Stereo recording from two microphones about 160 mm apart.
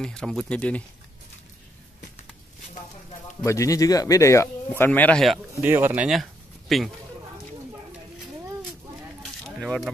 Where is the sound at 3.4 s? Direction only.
20° left (ahead or behind).